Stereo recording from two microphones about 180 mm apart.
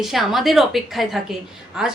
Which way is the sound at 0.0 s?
Centre (ahead or behind).